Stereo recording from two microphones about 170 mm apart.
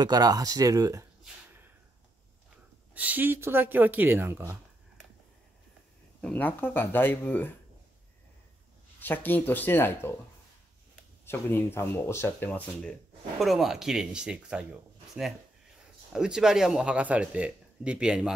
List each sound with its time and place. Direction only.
0.0 s speech: 25° right (ahead or behind)
2.9 s speech: 10° right (ahead or behind)
6.2 s speech: 10° left (ahead or behind)
9.0 s speech: 10° left (ahead or behind)
11.2 s speech: 15° left (ahead or behind); by 14.7 s 5° right (ahead or behind)
16.1 s speech: 5° right (ahead or behind)